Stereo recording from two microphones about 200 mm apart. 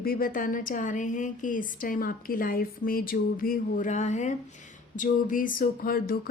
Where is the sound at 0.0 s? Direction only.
45° left (ahead or behind).